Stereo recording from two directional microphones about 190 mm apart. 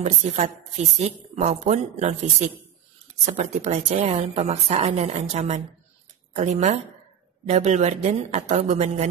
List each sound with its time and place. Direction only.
0.0 s a woman's voice: 35° right (ahead or behind)